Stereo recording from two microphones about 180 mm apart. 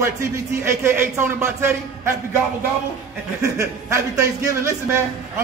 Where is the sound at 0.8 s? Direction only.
15° right (ahead or behind).